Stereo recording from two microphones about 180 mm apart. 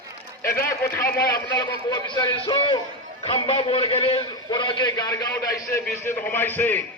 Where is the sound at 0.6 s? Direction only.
15° left (ahead or behind).